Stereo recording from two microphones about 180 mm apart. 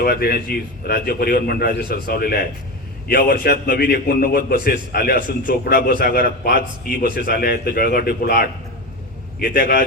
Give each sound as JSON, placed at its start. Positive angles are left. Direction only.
{"t": 0.0, "sound": "a man's voice", "side_deg": 60}